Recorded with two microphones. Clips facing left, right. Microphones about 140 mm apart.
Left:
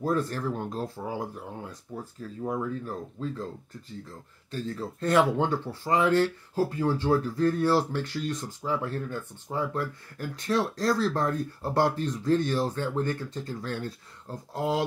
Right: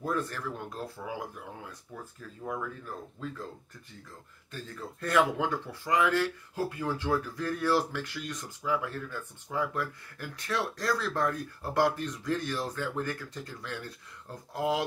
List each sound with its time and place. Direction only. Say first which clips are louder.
0.0 s speech: left 5 dB; 35° left (ahead or behind)
4.5 s speech: left 8 dB; 30° left (ahead or behind)